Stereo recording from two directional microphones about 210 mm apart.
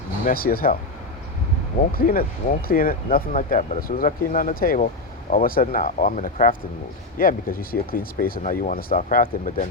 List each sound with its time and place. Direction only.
0.3 s speech: 45° left (ahead or behind)
1.9 s speech: 45° left (ahead or behind)